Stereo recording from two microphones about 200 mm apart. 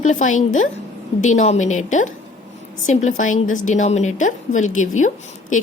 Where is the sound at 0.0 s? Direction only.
40° left (ahead or behind).